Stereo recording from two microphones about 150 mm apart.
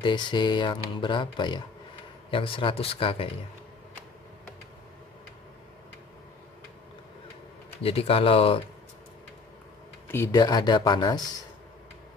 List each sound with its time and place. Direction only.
0.0 s speech: 30° left (ahead or behind)
7.8 s speech: 40° left (ahead or behind)
10.1 s speech: 15° left (ahead or behind)
10.4 s speech: 30° left (ahead or behind)